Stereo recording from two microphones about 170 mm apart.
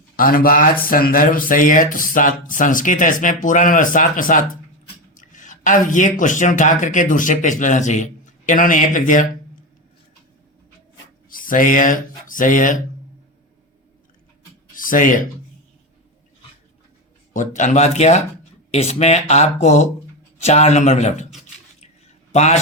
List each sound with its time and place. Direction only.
0.2 s speech: 55° left (ahead or behind)
11.3 s speech: 55° left (ahead or behind)
14.8 s speech: 50° left (ahead or behind)
17.3 s speech: 45° left (ahead or behind)
22.3 s a man's voice: 40° left (ahead or behind)